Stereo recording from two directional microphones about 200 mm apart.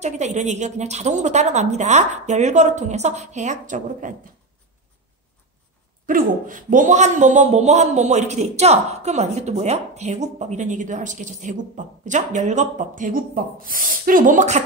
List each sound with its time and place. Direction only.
0.0 s a man's voice: 35° right (ahead or behind)
6.0 s a man's voice: 40° right (ahead or behind)